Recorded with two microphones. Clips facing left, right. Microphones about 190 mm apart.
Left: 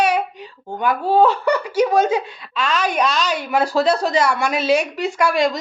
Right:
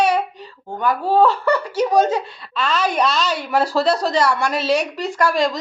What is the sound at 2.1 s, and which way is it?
Speech, 15° left (ahead or behind).